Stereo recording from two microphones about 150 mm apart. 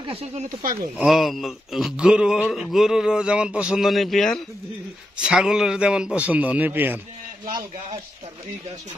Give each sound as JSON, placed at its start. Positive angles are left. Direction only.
{"t": 0.0, "sound": "speech", "side_deg": -40}
{"t": 0.9, "sound": "a sound", "side_deg": 0}
{"t": 5.2, "sound": "a man's voice", "side_deg": -5}